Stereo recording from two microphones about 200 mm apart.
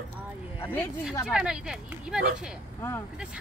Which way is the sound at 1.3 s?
5° right (ahead or behind).